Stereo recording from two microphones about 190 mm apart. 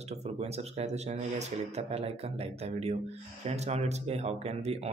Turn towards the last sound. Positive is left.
turn(degrees=-35)  # may be behind; listen again after turning